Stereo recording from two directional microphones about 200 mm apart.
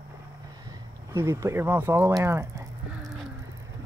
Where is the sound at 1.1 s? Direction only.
15° right (ahead or behind).